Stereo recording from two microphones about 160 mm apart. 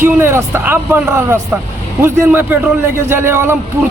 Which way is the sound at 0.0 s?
15° right (ahead or behind).